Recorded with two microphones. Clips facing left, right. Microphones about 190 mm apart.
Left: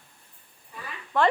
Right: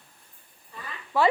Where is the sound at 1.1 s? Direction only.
5° right (ahead or behind).